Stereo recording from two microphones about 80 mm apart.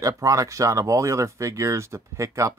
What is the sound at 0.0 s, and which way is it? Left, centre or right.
Speech, right.